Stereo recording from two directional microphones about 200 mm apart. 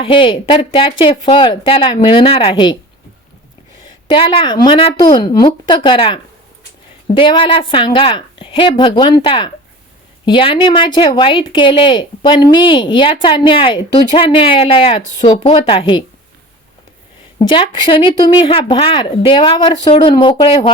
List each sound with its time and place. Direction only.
0.0 s a woman's voice: 25° left (ahead or behind)
3.8 s a woman's voice: 25° left (ahead or behind)
17.5 s a woman's voice: 25° left (ahead or behind)